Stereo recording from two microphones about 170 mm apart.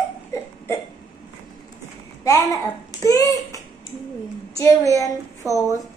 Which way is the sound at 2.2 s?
20° left (ahead or behind).